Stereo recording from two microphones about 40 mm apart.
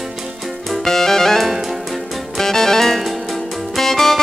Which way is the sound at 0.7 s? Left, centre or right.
Centre.